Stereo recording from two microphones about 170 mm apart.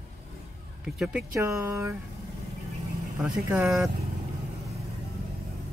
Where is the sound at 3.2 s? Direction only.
5° right (ahead or behind).